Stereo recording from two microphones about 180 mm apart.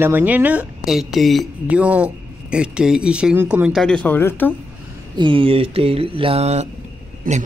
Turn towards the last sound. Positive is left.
turn(degrees=-50)  # may be behind; listen again after turning